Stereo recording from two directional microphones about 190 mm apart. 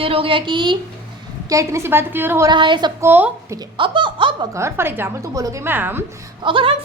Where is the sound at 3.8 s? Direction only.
25° right (ahead or behind).